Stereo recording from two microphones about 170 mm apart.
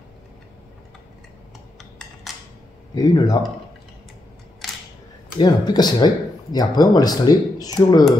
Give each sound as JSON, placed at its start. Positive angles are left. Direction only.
{"t": 2.9, "sound": "speech", "side_deg": 25}
{"t": 5.4, "sound": "speech", "side_deg": 25}